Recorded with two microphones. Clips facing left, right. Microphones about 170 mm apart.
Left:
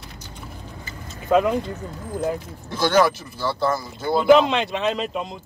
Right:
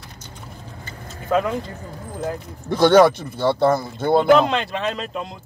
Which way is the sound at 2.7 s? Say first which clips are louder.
Right 6 dB; 60° right (ahead or behind).